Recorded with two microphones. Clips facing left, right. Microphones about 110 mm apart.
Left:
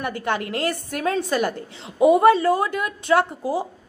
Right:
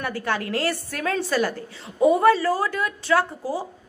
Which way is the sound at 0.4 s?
40° right (ahead or behind).